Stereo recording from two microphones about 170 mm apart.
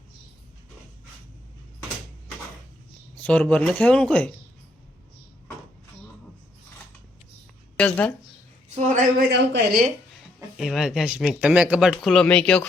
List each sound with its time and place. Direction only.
3.2 s speech: 5° left (ahead or behind)
7.8 s a woman's voice: 10° left (ahead or behind)
8.7 s a man's voice: 45° right (ahead or behind)
9.1 s a man's voice: 85° right
10.6 s speech: centre (ahead or behind)